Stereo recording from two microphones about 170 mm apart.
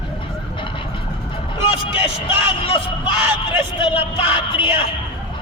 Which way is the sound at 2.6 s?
30° left (ahead or behind).